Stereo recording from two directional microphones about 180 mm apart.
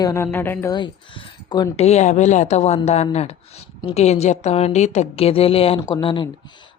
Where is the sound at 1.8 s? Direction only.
40° left (ahead or behind).